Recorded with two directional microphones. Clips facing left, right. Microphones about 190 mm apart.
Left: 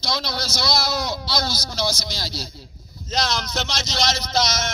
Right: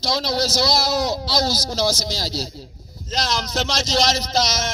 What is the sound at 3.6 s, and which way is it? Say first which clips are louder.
Speech: right 7 dB; 90° right.